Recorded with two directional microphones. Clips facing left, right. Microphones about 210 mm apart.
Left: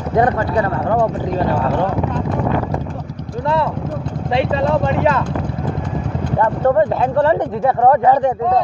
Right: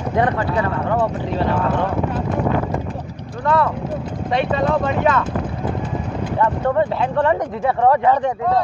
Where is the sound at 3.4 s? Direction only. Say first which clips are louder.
Even; 25° left (ahead or behind).